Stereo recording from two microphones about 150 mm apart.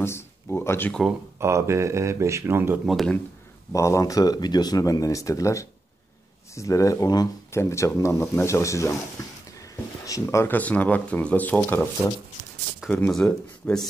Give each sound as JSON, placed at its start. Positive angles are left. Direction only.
{"t": 0.0, "sound": "a sound", "side_deg": 15}
{"t": 1.4, "sound": "speech", "side_deg": -20}
{"t": 2.9, "sound": "speech", "side_deg": 0}
{"t": 3.7, "sound": "speech", "side_deg": 20}
{"t": 12.9, "sound": "speech", "side_deg": 5}